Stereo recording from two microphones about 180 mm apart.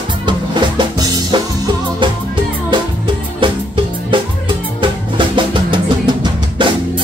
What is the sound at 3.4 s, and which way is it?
Music, 25° right (ahead or behind).